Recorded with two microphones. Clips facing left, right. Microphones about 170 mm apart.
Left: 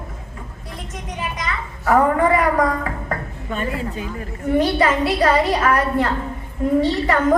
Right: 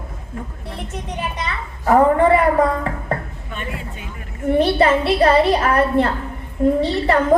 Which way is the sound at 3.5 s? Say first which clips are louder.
Left 6 dB; 40° left (ahead or behind).